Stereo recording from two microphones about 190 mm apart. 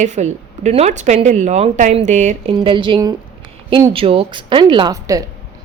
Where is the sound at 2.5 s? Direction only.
25° right (ahead or behind).